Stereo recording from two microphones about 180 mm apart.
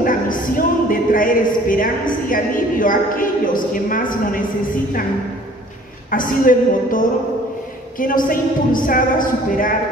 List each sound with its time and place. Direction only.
0.0 s music: 50° left (ahead or behind)
6.0 s music: 50° left (ahead or behind)